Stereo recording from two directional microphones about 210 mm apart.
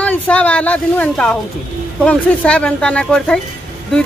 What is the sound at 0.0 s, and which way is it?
Speech, 5° left (ahead or behind).